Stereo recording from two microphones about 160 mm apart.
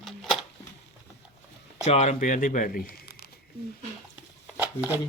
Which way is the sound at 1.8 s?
45° left (ahead or behind).